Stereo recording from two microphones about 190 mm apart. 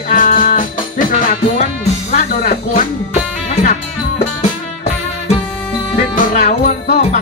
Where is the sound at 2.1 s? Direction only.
35° left (ahead or behind).